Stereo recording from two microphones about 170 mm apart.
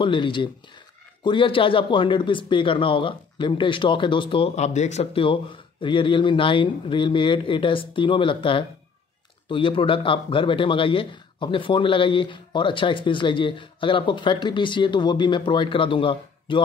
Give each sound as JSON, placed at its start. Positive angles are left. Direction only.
{"t": 0.0, "sound": "speech", "side_deg": 30}